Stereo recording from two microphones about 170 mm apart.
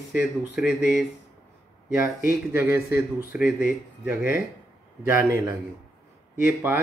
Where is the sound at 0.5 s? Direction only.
5° right (ahead or behind).